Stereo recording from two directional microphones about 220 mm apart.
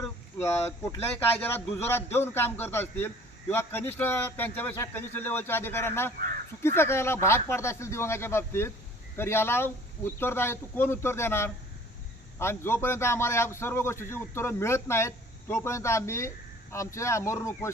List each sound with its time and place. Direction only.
0.3 s a man's voice: 10° left (ahead or behind)